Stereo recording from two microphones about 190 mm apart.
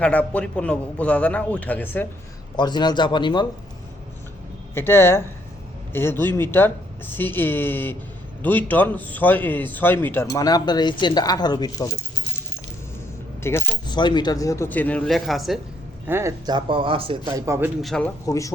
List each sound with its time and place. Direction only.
0.0 s speech: 5° left (ahead or behind)
2.6 s speech: 25° left (ahead or behind)
4.7 s speech: 10° left (ahead or behind)
13.4 s speech: 15° left (ahead or behind)
16.0 s speech: 15° right (ahead or behind)
17.4 s a man's voice: 15° right (ahead or behind)
17.7 s speech: centre (ahead or behind)
18.3 s speech: 15° left (ahead or behind)